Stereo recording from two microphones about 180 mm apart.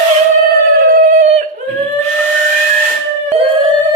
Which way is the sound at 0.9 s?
45° right (ahead or behind).